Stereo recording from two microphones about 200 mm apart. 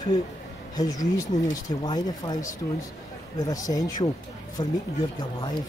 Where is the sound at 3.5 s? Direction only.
15° left (ahead or behind).